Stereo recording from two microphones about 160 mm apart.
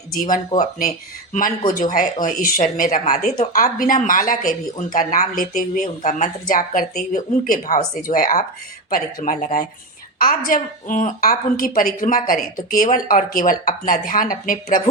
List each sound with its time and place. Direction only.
0.2 s speech: 60° left (ahead or behind)
10.2 s speech: 60° left (ahead or behind)